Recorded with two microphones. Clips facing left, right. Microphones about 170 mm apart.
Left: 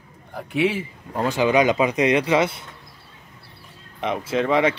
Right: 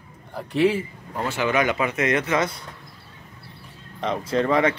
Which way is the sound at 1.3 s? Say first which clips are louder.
Left 4 dB; 15° left (ahead or behind).